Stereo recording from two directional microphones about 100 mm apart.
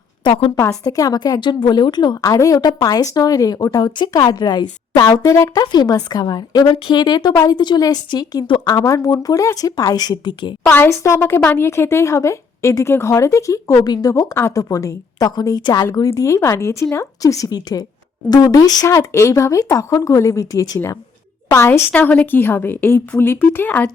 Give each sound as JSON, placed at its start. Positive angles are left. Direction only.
{"t": 0.3, "sound": "a woman's voice", "side_deg": 70}
{"t": 0.5, "sound": "a woman's voice", "side_deg": 30}
{"t": 2.2, "sound": "a woman's voice", "side_deg": 35}
{"t": 10.7, "sound": "a woman's voice", "side_deg": 25}
{"t": 13.8, "sound": "a woman's voice", "side_deg": 45}
{"t": 14.1, "sound": "a woman's voice", "side_deg": 35}
{"t": 16.1, "sound": "a woman's voice", "side_deg": 30}